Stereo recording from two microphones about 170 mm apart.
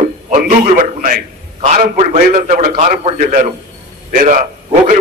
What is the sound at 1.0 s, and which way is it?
A man's voice, 50° right (ahead or behind).